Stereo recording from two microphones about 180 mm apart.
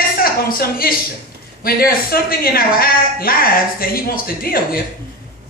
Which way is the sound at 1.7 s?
55° left (ahead or behind).